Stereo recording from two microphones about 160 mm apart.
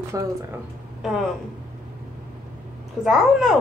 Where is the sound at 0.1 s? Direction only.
20° right (ahead or behind).